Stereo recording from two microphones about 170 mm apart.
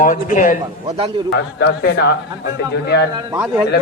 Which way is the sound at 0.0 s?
50° left (ahead or behind).